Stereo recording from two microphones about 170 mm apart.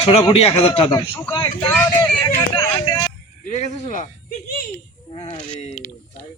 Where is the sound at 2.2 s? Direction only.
20° left (ahead or behind).